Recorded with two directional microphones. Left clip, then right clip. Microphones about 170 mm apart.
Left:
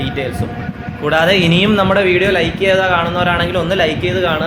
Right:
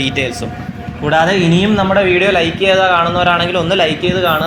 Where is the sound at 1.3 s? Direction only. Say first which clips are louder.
Left 1 dB; 30° left (ahead or behind).